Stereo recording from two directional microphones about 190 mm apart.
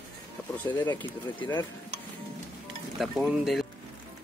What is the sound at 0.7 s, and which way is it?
Speech, 25° left (ahead or behind).